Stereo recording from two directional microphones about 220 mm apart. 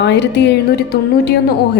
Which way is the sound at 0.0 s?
50° left (ahead or behind).